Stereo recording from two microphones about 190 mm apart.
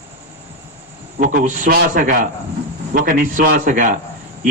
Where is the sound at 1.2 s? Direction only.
45° right (ahead or behind).